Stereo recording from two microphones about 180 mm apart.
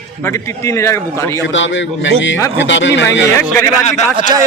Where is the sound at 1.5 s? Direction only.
90° left.